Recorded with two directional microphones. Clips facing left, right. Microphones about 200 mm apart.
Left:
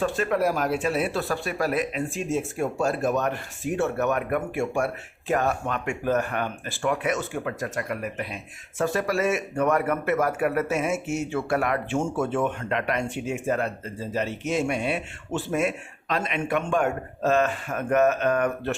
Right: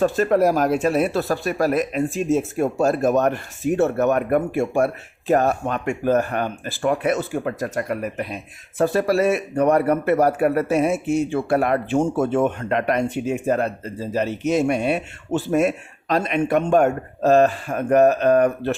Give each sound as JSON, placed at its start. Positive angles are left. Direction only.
{"t": 0.0, "sound": "a man's voice", "side_deg": -40}